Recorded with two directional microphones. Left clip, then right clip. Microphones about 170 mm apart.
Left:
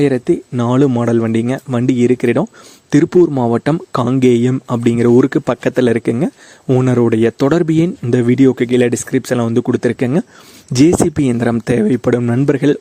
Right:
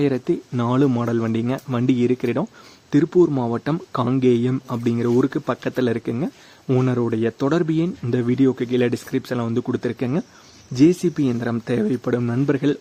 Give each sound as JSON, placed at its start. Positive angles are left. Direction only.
{"t": 0.0, "sound": "speech", "side_deg": 35}
{"t": 10.8, "sound": "speech", "side_deg": 55}